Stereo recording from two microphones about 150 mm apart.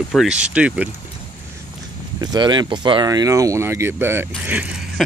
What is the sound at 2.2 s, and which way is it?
Speech, 30° right (ahead or behind).